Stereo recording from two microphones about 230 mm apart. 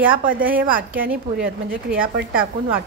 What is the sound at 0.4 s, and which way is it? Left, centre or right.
Speech, right.